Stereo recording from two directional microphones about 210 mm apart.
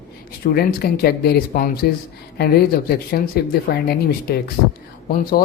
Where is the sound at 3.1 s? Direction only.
45° left (ahead or behind).